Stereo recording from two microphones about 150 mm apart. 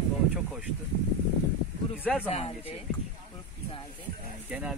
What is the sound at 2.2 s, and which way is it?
Speech, 40° left (ahead or behind).